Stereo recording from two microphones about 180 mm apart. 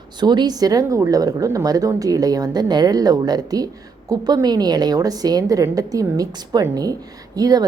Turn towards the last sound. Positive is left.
turn(degrees=-20)  # may be behind; listen again after turning